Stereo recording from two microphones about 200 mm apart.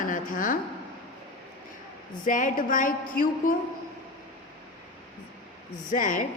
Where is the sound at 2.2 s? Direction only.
40° left (ahead or behind).